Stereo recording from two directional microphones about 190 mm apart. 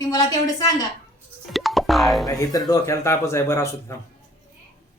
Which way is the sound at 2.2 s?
20° left (ahead or behind).